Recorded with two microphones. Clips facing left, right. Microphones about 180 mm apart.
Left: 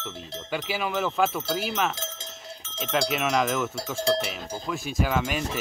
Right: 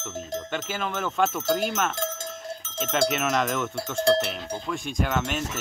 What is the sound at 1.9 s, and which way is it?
Cowbell, 45° right (ahead or behind).